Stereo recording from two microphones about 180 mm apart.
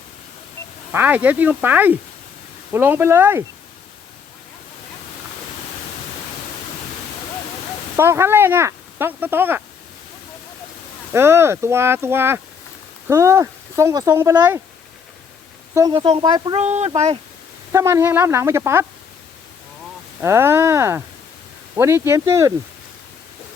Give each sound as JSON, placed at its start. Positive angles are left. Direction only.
{"t": 0.9, "sound": "speech", "side_deg": -10}
{"t": 7.9, "sound": "speech", "side_deg": -15}
{"t": 11.1, "sound": "speech", "side_deg": -15}
{"t": 15.7, "sound": "speech", "side_deg": -20}
{"t": 16.6, "sound": "speech", "side_deg": -40}
{"t": 17.7, "sound": "speech", "side_deg": -15}
{"t": 20.2, "sound": "speech", "side_deg": -15}